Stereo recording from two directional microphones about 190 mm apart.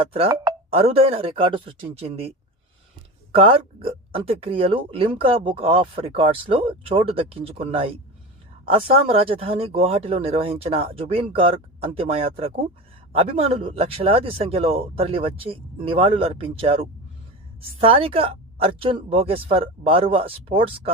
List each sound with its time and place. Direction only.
0.7 s speech: 30° right (ahead or behind)
3.3 s speech: 30° right (ahead or behind)
9.0 s speech: 30° right (ahead or behind)